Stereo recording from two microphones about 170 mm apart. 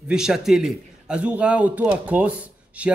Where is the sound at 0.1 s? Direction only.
5° right (ahead or behind).